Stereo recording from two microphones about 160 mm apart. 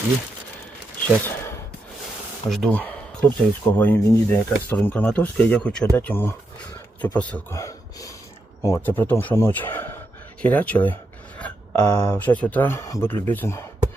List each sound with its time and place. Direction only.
1.0 s a sound: 15° left (ahead or behind)
2.5 s speech: centre (ahead or behind)
3.2 s speech: 10° left (ahead or behind)
7.5 s gasp: 20° left (ahead or behind)
8.6 s speech: 15° left (ahead or behind)